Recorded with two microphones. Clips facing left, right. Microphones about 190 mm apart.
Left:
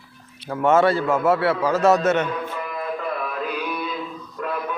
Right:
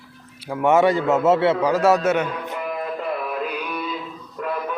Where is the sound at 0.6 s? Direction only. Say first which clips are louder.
Right 1 dB; 15° right (ahead or behind).